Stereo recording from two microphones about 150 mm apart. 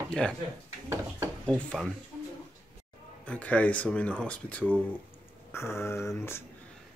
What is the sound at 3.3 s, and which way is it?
Speech, 10° left (ahead or behind).